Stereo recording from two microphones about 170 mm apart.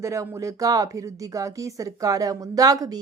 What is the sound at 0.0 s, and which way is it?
Speech, 15° right (ahead or behind).